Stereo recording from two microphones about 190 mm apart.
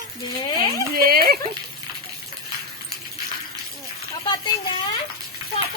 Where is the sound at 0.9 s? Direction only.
50° right (ahead or behind).